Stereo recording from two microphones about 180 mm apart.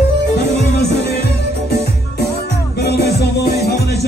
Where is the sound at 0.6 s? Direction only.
65° left (ahead or behind).